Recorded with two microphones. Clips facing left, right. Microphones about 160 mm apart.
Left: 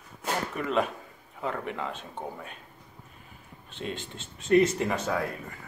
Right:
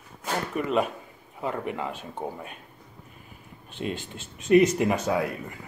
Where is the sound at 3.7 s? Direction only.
10° right (ahead or behind).